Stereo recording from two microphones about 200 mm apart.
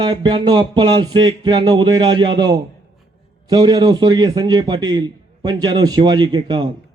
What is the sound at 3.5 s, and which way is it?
A man's voice, 20° right (ahead or behind).